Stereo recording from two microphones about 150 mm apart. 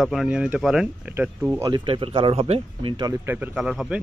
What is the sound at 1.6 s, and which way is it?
Speech, 30° right (ahead or behind).